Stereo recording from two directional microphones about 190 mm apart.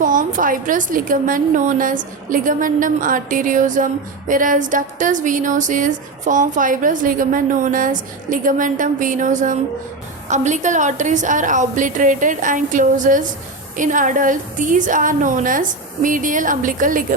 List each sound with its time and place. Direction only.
0.0 s a woman's voice: 45° right (ahead or behind)